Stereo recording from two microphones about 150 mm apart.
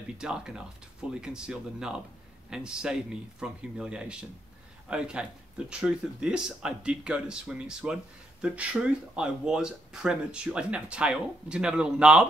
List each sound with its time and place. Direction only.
0.2 s a man's voice: 5° right (ahead or behind)